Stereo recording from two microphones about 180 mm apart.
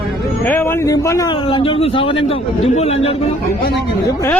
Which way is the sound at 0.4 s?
10° left (ahead or behind).